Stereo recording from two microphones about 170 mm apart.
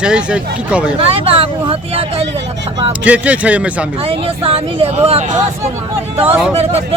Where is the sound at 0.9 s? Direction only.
35° right (ahead or behind).